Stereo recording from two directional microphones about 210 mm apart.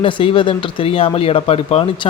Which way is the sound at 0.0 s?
25° left (ahead or behind).